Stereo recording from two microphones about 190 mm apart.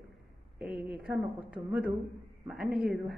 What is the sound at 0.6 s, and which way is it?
Speech, 5° right (ahead or behind).